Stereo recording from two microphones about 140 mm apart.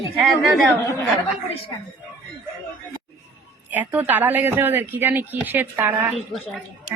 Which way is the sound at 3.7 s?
10° right (ahead or behind).